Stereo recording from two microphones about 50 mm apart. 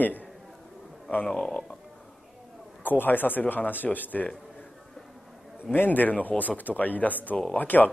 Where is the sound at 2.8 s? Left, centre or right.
Left.